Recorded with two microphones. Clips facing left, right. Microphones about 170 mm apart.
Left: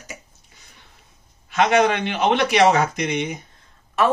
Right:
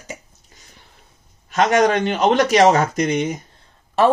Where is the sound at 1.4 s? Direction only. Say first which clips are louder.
Right 2 dB; 40° right (ahead or behind).